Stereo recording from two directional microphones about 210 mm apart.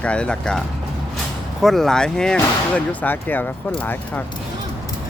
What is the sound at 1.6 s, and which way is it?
Speech, centre (ahead or behind).